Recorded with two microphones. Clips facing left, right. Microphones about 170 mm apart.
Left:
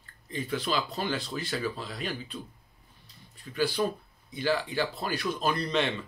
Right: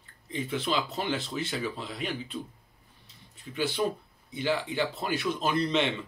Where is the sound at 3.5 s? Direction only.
20° right (ahead or behind).